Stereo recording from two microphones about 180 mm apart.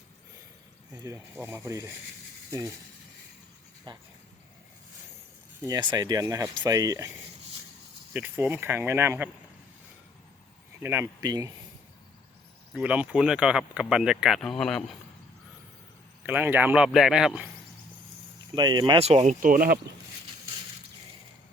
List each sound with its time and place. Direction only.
0.9 s speech: 15° right (ahead or behind)
3.9 s speech: 25° right (ahead or behind)
5.6 s speech: 20° right (ahead or behind)
8.1 s speech: 10° right (ahead or behind)
10.8 s speech: 15° right (ahead or behind)
12.7 s speech: 5° right (ahead or behind)
16.2 s speech: 10° right (ahead or behind)
18.5 s speech: 25° right (ahead or behind); by 19.8 s 50° right (ahead or behind)